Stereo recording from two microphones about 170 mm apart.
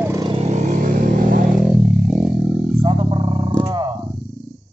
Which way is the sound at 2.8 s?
30° right (ahead or behind).